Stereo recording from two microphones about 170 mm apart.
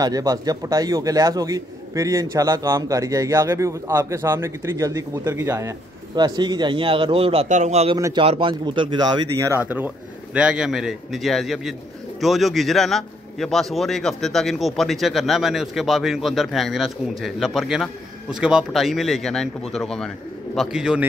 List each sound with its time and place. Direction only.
0.0 s a man's voice: 20° right (ahead or behind)
7.4 s a man's voice: 45° right (ahead or behind); by 9.2 s 30° right (ahead or behind)
9.4 s a man's voice: 15° right (ahead or behind)